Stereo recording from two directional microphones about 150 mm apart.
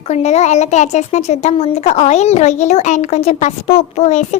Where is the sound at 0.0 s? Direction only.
50° left (ahead or behind).